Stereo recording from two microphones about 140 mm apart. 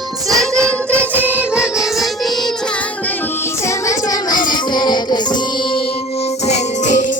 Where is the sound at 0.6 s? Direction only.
15° right (ahead or behind).